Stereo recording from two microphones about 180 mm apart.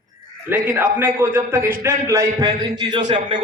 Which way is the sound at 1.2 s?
10° right (ahead or behind).